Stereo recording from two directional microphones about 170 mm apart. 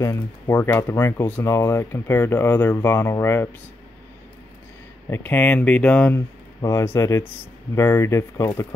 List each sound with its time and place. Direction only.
0.0 s speech: 15° left (ahead or behind)
5.1 s speech: 10° left (ahead or behind)